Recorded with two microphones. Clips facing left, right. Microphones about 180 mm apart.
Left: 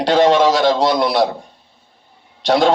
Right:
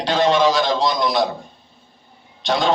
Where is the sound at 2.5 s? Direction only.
70° left (ahead or behind).